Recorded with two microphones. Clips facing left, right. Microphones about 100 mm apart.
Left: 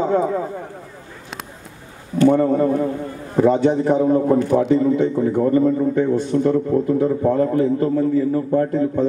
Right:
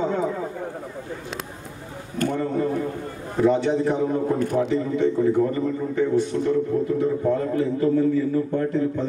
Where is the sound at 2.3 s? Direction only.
40° left (ahead or behind).